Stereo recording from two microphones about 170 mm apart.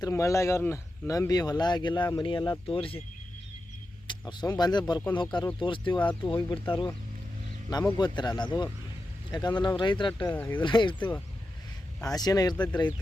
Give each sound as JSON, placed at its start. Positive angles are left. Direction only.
{"t": 0.0, "sound": "speech", "side_deg": 15}
{"t": 4.0, "sound": "speech", "side_deg": 25}
{"t": 7.9, "sound": "speech", "side_deg": 25}
{"t": 10.3, "sound": "speech", "side_deg": 10}
{"t": 10.6, "sound": "speech", "side_deg": 30}